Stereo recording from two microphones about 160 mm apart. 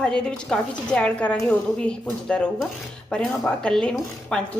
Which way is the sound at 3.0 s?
5° left (ahead or behind).